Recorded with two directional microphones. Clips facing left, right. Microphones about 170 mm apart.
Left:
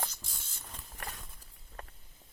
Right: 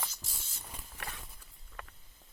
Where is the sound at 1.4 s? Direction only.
40° left (ahead or behind).